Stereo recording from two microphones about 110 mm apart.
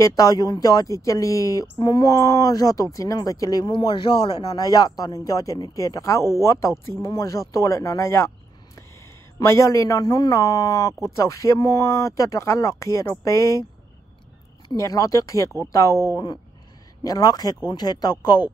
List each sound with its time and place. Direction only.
0.0 s speech: 30° left (ahead or behind)
3.6 s speech: 45° left (ahead or behind)
4.6 s speech: 35° left (ahead or behind)
14.8 s speech: 30° left (ahead or behind)